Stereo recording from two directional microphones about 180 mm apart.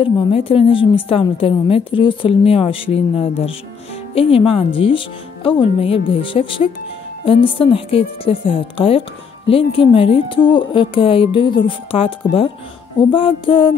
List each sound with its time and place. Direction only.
0.0 s a woman's voice: 30° left (ahead or behind)
13.1 s speech: 30° left (ahead or behind)